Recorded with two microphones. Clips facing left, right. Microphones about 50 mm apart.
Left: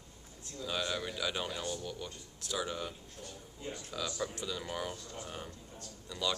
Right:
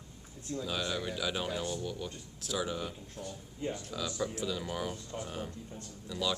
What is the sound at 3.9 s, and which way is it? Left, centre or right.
A man's voice, centre.